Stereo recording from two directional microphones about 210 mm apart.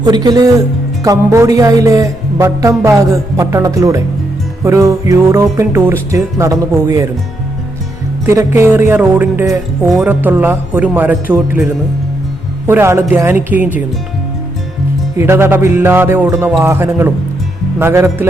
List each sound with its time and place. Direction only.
0.0 s speech: 20° right (ahead or behind)
1.0 s music: 15° right (ahead or behind)
8.3 s music: 15° right (ahead or behind)
15.2 s music: 10° right (ahead or behind)